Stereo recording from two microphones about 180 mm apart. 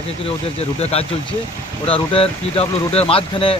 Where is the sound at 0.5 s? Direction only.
35° left (ahead or behind).